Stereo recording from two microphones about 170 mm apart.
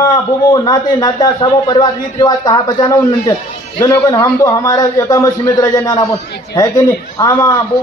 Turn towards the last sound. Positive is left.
turn(degrees=20)  # may be behind; listen again after turning